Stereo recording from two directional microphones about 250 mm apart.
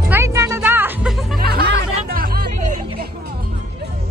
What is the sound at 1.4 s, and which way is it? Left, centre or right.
Music, right.